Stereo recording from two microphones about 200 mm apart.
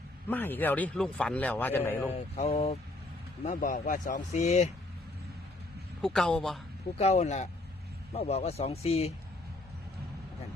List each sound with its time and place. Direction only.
0.3 s a man's voice: 10° left (ahead or behind)
2.0 s speech: 30° left (ahead or behind)
6.0 s speech: centre (ahead or behind)
7.0 s speech: 35° left (ahead or behind)